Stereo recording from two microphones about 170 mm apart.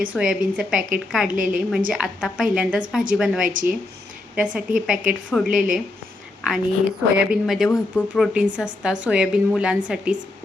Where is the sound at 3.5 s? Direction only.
50° right (ahead or behind).